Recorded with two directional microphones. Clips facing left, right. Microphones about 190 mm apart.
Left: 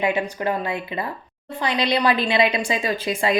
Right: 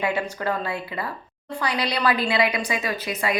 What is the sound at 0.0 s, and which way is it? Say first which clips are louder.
A woman's voice: left 3 dB; 20° left (ahead or behind).